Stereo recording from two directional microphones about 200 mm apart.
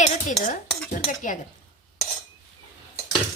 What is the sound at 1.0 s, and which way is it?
Speech, 40° left (ahead or behind).